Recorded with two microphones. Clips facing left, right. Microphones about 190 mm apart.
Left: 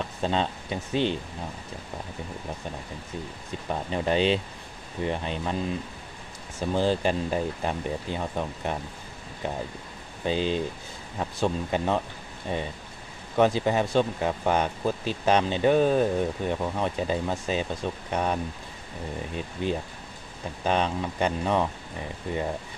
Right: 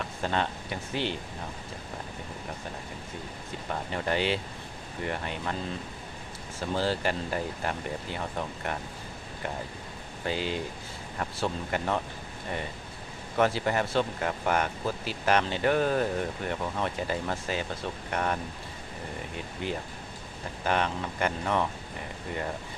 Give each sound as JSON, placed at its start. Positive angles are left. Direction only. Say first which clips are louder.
{"t": 0.0, "sound": "speech", "louder": "left 3 dB", "side_deg": 20}
{"t": 3.7, "sound": "speech", "louder": "left 4 dB", "side_deg": 20}
{"t": 6.6, "sound": "speech", "louder": "left 4 dB", "side_deg": 20}
{"t": 10.2, "sound": "speech", "louder": "left 5 dB", "side_deg": 20}
{"t": 20.7, "sound": "speech", "louder": "left 3 dB", "side_deg": 20}